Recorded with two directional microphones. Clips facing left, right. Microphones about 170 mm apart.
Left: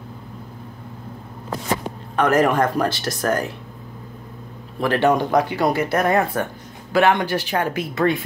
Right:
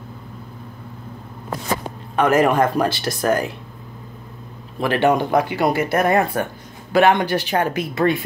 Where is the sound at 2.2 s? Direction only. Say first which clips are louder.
Right 1 dB; 10° right (ahead or behind).